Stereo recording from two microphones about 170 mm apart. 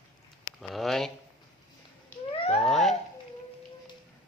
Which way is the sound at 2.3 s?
30° left (ahead or behind).